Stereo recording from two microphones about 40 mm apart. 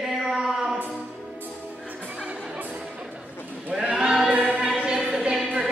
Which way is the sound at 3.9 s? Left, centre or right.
Centre.